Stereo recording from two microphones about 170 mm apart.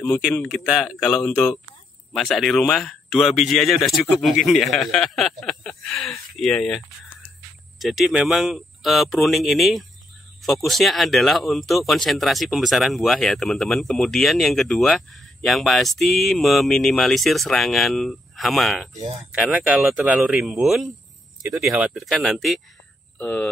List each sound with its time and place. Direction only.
0.3 s speech: 5° left (ahead or behind)
7.8 s speech: centre (ahead or behind)
18.9 s speech: 40° right (ahead or behind)
19.3 s speech: 5° right (ahead or behind)